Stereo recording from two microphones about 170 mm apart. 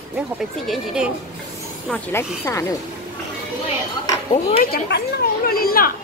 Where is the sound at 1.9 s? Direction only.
15° left (ahead or behind).